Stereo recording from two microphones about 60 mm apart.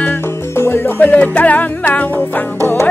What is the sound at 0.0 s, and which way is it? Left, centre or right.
Music, left.